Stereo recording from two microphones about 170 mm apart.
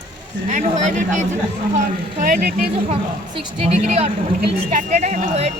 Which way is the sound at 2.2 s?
60° right (ahead or behind).